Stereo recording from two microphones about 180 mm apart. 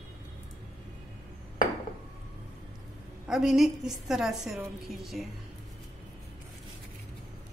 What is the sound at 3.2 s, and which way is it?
A woman's voice, 5° right (ahead or behind).